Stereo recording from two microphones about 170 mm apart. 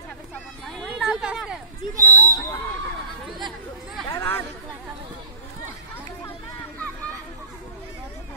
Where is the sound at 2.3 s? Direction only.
15° left (ahead or behind).